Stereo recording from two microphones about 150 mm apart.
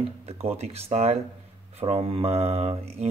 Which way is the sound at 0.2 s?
45° right (ahead or behind).